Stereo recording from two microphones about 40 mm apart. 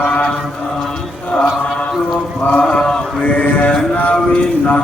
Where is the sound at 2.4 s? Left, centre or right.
Left.